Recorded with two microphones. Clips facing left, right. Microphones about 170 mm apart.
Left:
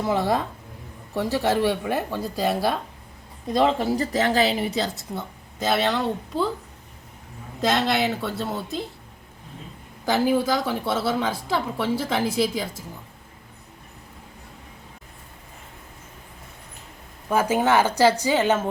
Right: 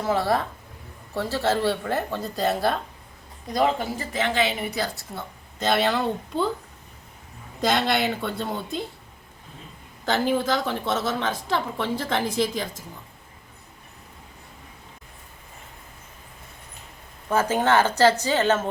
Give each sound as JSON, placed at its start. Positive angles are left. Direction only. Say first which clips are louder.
{"t": 0.1, "sound": "a woman's voice", "louder": "right 1 dB", "side_deg": 15}
{"t": 3.5, "sound": "a woman's voice", "louder": "left 3 dB", "side_deg": 30}
{"t": 5.5, "sound": "a woman's voice", "louder": "even", "side_deg": 5}
{"t": 7.6, "sound": "a woman's voice", "louder": "left 1 dB", "side_deg": 0}
{"t": 10.1, "sound": "a woman's voice", "louder": "left 2 dB", "side_deg": 10}
{"t": 17.2, "sound": "a woman's voice", "louder": "left 1 dB", "side_deg": 10}